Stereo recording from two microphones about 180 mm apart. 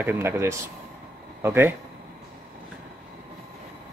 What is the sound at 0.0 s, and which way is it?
Speech, 10° right (ahead or behind).